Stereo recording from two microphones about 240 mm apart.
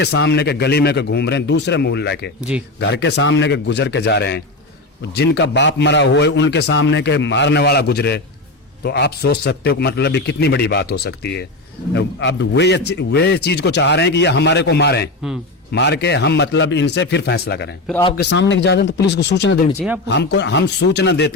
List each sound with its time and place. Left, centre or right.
0.0 s speech: left
2.4 s speech: centre
2.8 s speech: left